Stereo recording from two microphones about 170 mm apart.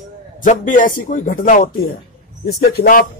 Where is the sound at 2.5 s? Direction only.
55° left (ahead or behind).